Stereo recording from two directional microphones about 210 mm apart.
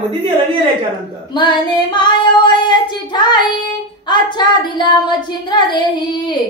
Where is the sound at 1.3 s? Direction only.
20° left (ahead or behind).